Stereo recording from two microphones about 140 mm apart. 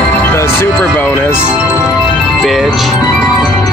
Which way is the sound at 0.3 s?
15° left (ahead or behind).